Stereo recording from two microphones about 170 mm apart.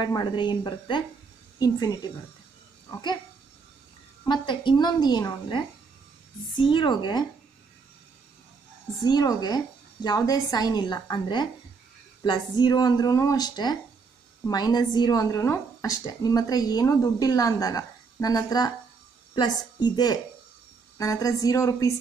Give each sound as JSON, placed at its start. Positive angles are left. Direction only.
{"t": 0.0, "sound": "a woman's voice", "side_deg": 25}
{"t": 4.3, "sound": "a woman's voice", "side_deg": 25}
{"t": 6.6, "sound": "a woman's voice", "side_deg": 30}
{"t": 9.0, "sound": "a woman's voice", "side_deg": 25}